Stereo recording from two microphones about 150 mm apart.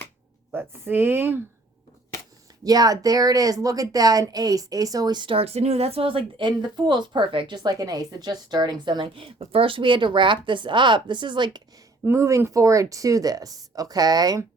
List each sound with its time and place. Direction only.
0.5 s speech: 15° right (ahead or behind)
2.6 s speech: 25° right (ahead or behind)
12.0 s speech: 20° right (ahead or behind)